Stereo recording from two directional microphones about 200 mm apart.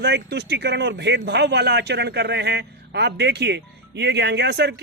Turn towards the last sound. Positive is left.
turn(degrees=-55)  # may be behind; listen again after turning